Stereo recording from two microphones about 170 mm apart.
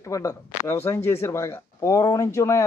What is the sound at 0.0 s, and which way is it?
Speech, 20° left (ahead or behind).